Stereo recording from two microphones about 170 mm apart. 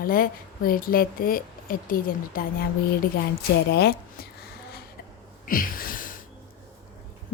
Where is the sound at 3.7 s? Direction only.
70° left (ahead or behind).